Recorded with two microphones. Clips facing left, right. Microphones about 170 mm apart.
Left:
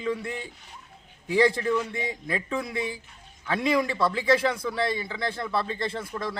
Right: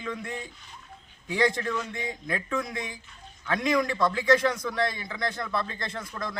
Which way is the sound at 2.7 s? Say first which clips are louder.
Left 5 dB; 30° left (ahead or behind).